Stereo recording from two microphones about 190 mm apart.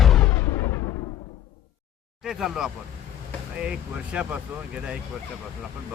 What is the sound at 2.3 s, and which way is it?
Speech, centre (ahead or behind).